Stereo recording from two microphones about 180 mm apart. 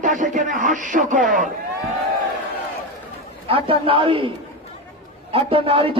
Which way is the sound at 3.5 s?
30° right (ahead or behind).